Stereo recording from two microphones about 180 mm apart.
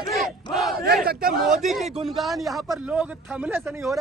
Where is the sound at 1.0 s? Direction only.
55° right (ahead or behind).